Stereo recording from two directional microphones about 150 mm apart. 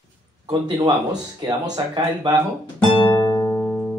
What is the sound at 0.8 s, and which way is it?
Speech, 30° right (ahead or behind).